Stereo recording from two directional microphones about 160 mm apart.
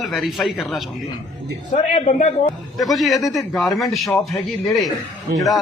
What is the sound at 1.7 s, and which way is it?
Speech, 50° left (ahead or behind).